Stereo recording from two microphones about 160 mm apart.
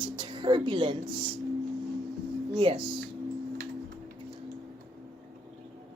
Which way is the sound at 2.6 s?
35° right (ahead or behind).